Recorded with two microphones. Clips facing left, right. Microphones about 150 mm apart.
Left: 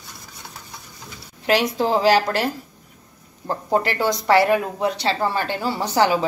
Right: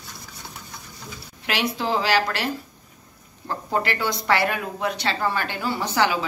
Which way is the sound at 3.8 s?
40° left (ahead or behind).